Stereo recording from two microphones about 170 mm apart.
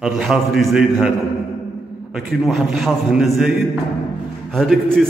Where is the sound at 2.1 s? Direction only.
Centre (ahead or behind).